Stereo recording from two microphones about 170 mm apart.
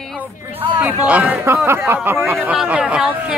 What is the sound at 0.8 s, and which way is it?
Speech, 10° right (ahead or behind).